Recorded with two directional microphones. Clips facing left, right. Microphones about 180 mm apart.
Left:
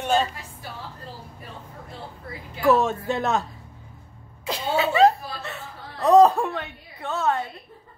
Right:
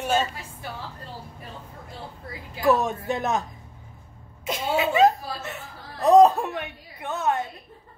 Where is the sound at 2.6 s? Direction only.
15° right (ahead or behind).